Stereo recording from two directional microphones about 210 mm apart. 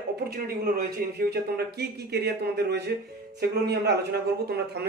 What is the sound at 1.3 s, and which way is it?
Speech, 50° right (ahead or behind).